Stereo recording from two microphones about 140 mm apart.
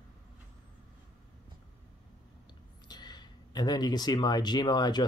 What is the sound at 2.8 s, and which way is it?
Speech, 30° left (ahead or behind).